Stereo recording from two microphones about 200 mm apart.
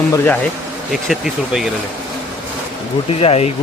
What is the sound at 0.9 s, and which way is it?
Speech, centre (ahead or behind).